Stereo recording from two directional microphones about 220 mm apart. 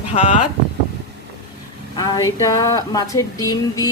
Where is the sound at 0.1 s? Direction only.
30° left (ahead or behind).